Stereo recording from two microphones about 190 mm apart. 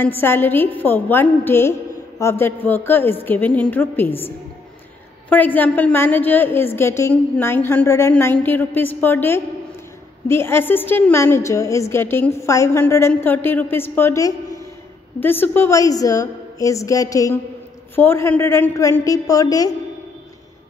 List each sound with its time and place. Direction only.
0.0 s a woman's voice: 10° left (ahead or behind)
5.3 s a woman's voice: 10° left (ahead or behind)